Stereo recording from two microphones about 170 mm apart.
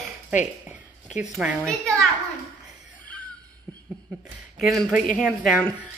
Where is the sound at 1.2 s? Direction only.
5° right (ahead or behind).